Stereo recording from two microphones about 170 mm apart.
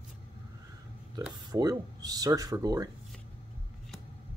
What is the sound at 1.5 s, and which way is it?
Speech, 20° right (ahead or behind).